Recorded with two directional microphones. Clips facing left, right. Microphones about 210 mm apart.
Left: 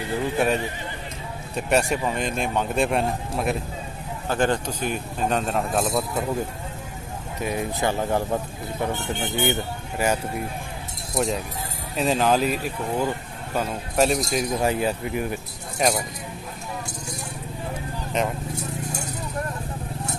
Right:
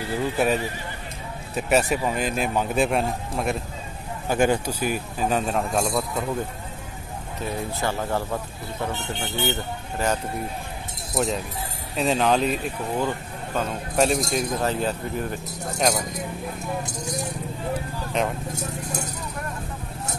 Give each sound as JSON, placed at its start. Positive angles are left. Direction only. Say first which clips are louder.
{"t": 0.4, "sound": "speech", "louder": "right 1 dB", "side_deg": 0}
{"t": 4.3, "sound": "speech", "louder": "right 2 dB", "side_deg": -10}
{"t": 7.3, "sound": "speech", "louder": "left 3 dB", "side_deg": 15}
{"t": 11.1, "sound": "speech", "louder": "even", "side_deg": 0}
{"t": 14.6, "sound": "speech", "louder": "left 2 dB", "side_deg": 10}
{"t": 18.2, "sound": "speech", "louder": "even", "side_deg": 0}